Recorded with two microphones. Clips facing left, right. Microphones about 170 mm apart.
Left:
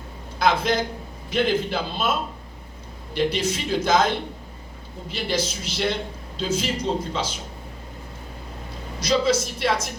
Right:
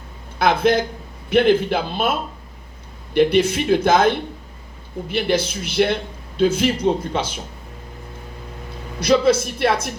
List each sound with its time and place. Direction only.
0.3 s a man's voice: 60° right (ahead or behind)
3.2 s a man's voice: 60° right (ahead or behind)
9.0 s a man's voice: 60° right (ahead or behind)